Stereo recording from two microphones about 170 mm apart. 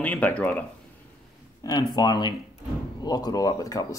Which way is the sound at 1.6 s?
20° left (ahead or behind).